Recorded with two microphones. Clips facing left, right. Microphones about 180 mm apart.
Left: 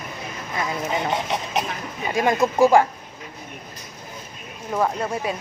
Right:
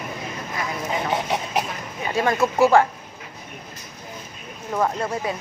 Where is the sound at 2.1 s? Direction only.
15° left (ahead or behind).